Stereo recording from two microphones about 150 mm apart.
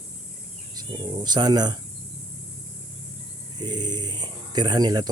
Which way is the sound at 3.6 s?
30° right (ahead or behind).